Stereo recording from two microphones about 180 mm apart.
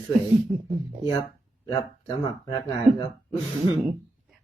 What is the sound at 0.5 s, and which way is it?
Speech, centre (ahead or behind).